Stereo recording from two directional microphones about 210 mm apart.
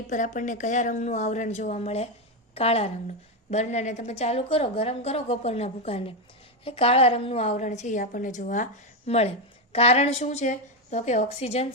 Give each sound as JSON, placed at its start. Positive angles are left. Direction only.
{"t": 0.1, "sound": "a woman's voice", "side_deg": 35}